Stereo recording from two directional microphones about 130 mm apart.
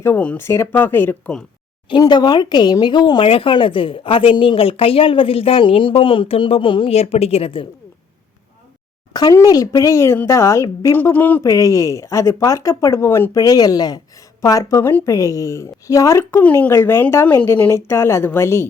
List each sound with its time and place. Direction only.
0.0 s speech: 15° left (ahead or behind)
1.9 s speech: 35° left (ahead or behind)
9.1 s speech: 30° left (ahead or behind)
11.4 s speech: 25° left (ahead or behind)